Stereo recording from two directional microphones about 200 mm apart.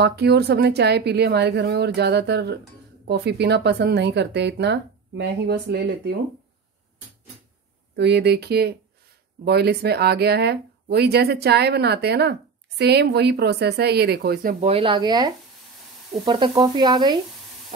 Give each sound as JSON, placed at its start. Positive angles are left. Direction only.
{"t": 0.0, "sound": "speech", "side_deg": -55}
{"t": 7.9, "sound": "speech", "side_deg": -55}
{"t": 14.7, "sound": "speech", "side_deg": -25}